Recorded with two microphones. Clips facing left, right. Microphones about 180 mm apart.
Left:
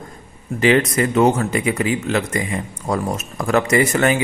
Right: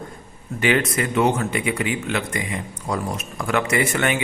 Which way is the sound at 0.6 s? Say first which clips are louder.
Left 5 dB; 35° left (ahead or behind).